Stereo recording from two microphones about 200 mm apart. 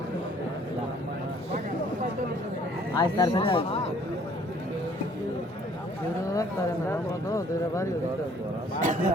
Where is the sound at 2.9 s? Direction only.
20° left (ahead or behind).